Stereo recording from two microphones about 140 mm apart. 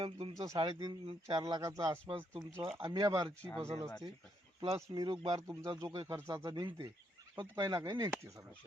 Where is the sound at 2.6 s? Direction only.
40° right (ahead or behind).